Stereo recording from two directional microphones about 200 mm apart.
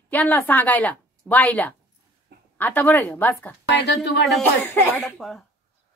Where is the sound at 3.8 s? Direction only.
60° left (ahead or behind).